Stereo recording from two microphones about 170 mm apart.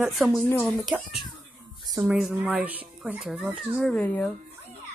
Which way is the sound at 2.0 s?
5° right (ahead or behind).